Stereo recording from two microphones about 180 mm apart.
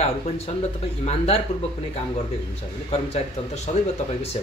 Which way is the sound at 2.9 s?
35° left (ahead or behind).